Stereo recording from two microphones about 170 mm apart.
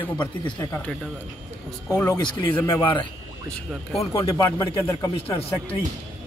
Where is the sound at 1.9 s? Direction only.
20° left (ahead or behind).